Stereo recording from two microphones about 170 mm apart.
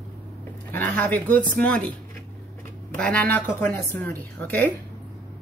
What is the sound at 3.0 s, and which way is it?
Speech, 5° left (ahead or behind).